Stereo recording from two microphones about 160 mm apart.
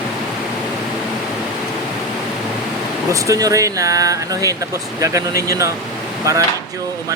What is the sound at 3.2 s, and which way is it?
Speech, 20° right (ahead or behind).